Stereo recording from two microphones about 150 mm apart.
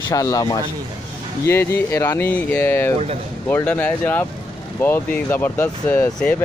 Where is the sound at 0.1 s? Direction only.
25° left (ahead or behind).